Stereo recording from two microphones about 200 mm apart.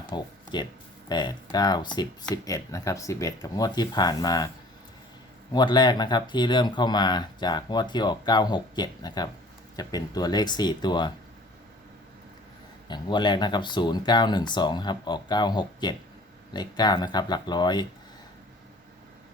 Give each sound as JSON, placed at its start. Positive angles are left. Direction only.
{"t": 0.1, "sound": "speech", "side_deg": 20}
{"t": 5.5, "sound": "speech", "side_deg": 20}
{"t": 12.9, "sound": "speech", "side_deg": 20}